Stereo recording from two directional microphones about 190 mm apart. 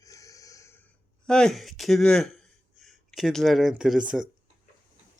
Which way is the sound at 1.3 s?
5° left (ahead or behind).